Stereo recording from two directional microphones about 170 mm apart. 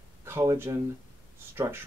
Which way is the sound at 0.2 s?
15° right (ahead or behind).